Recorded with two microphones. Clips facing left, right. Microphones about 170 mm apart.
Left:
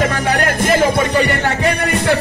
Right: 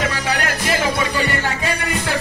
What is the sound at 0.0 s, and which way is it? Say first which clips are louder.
Music: left 5 dB; 55° left (ahead or behind).